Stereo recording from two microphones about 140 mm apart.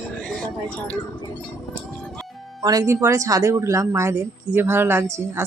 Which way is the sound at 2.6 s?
25° right (ahead or behind).